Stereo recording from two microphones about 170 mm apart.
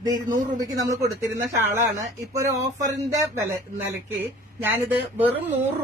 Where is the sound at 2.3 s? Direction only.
20° right (ahead or behind).